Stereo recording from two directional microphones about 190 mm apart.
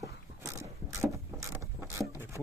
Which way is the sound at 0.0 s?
15° right (ahead or behind).